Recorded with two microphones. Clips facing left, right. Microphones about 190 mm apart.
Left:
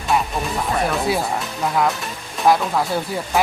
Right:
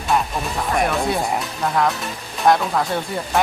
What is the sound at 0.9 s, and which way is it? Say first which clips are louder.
Speech: even; centre (ahead or behind).